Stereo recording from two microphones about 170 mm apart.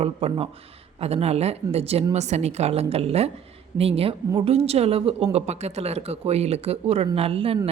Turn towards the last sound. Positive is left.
turn(degrees=-35)  # may be behind; listen again after turning